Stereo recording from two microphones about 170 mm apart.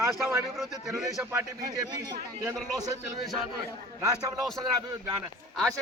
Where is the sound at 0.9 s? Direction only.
Centre (ahead or behind).